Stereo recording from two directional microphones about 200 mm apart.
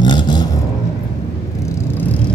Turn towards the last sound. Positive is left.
turn(degrees=20)  # may be behind; listen again after turning